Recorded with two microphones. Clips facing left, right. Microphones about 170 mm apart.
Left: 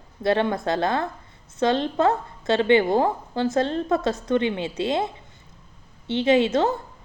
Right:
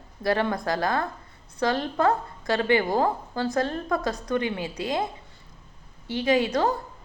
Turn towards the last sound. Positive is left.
turn(degrees=25)  # may be behind; listen again after turning